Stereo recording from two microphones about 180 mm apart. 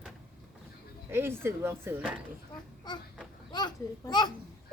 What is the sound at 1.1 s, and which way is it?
Speech, 15° right (ahead or behind).